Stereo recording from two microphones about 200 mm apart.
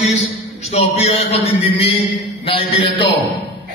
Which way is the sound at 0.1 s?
35° left (ahead or behind).